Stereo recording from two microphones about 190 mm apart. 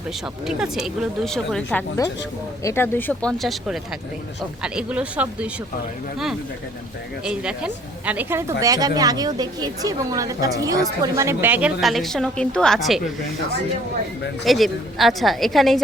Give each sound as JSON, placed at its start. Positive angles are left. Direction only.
{"t": 0.4, "sound": "speech", "side_deg": -5}
{"t": 7.3, "sound": "speech", "side_deg": -5}
{"t": 14.4, "sound": "speech", "side_deg": 0}